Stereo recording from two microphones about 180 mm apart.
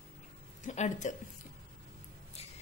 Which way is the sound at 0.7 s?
40° left (ahead or behind).